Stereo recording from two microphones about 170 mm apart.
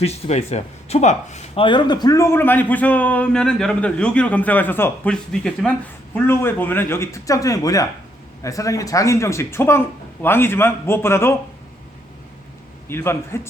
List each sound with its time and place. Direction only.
0.0 s speech: 40° left (ahead or behind); by 11.3 s 15° left (ahead or behind)
12.9 s speech: 15° left (ahead or behind)